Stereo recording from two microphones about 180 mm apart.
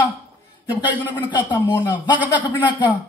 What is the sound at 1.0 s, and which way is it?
Speech, 25° left (ahead or behind).